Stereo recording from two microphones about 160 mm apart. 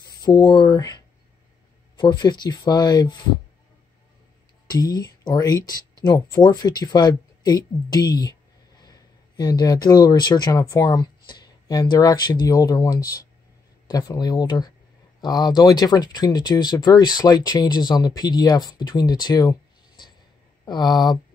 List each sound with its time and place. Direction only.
0.2 s speech: 20° left (ahead or behind)
4.6 s speech: 25° left (ahead or behind)
20.6 s speech: 25° left (ahead or behind)